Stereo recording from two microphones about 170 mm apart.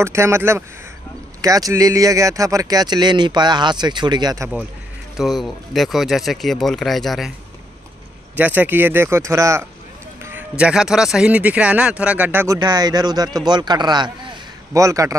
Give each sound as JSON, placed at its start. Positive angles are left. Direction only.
{"t": 0.0, "sound": "speech", "side_deg": -15}
{"t": 5.1, "sound": "speech", "side_deg": 0}
{"t": 8.4, "sound": "speech", "side_deg": -10}
{"t": 10.6, "sound": "speech", "side_deg": -5}
{"t": 12.5, "sound": "speech", "side_deg": -25}